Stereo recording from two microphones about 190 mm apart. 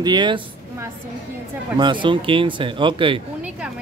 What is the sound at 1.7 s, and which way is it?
Speech, 25° right (ahead or behind).